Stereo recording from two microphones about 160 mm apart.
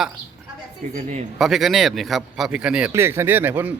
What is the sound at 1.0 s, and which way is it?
Speech, 55° right (ahead or behind).